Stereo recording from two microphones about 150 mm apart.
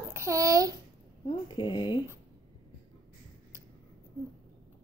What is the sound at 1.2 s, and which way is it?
Speech, 30° left (ahead or behind).